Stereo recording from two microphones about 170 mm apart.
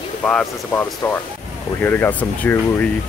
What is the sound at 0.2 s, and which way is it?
Speech, 10° left (ahead or behind).